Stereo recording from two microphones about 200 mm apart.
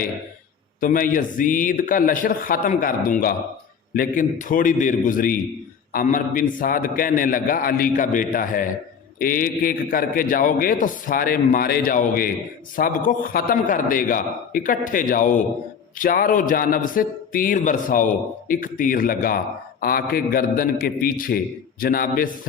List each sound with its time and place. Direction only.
0.8 s a man's voice: 45° left (ahead or behind)